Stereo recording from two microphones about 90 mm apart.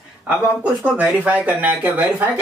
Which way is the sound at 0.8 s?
15° right (ahead or behind).